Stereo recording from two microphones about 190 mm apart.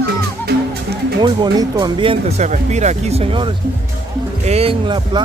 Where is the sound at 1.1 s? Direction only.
20° right (ahead or behind).